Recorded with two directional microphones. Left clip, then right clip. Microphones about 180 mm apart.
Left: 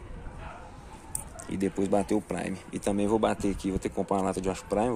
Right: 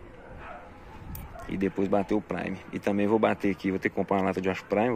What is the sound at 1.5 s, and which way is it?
Speech, 20° left (ahead or behind).